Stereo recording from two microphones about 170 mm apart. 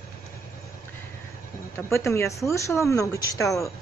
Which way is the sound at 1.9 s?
15° left (ahead or behind).